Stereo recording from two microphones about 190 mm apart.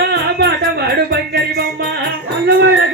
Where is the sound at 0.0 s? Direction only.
60° right (ahead or behind).